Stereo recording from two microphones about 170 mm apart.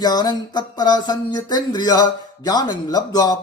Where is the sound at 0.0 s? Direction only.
25° left (ahead or behind).